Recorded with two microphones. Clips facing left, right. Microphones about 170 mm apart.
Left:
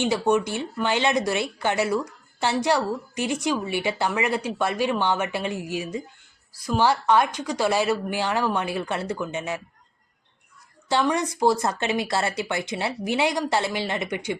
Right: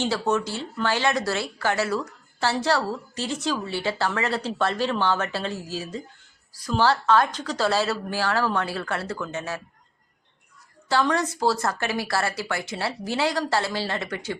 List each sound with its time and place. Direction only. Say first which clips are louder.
0.0 s speech: left 3 dB; 15° left (ahead or behind)
10.8 s speech: even; 20° left (ahead or behind)